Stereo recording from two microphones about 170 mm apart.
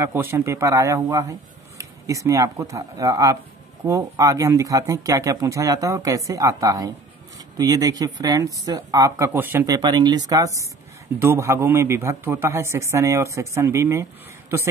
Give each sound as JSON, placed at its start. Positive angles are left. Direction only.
{"t": 0.0, "sound": "a man's voice", "side_deg": -15}
{"t": 9.8, "sound": "a man's voice", "side_deg": -25}